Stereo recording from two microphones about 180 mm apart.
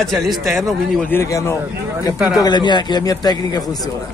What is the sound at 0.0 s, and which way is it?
A man's voice, centre (ahead or behind).